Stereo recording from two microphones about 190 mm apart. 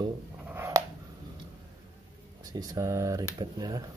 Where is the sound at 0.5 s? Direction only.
15° right (ahead or behind).